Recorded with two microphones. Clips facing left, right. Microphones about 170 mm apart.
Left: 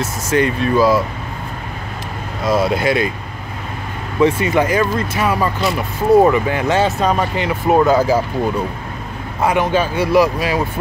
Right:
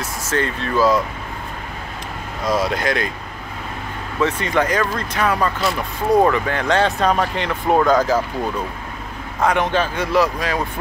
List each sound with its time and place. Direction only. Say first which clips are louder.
0.3 s speech: left 6 dB; 15° left (ahead or behind)
2.4 s speech: left 4 dB; 10° left (ahead or behind)
4.2 s speech: left 5 dB; 10° left (ahead or behind)